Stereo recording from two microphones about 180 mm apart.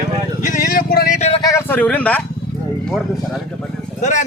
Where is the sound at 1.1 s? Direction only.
35° left (ahead or behind).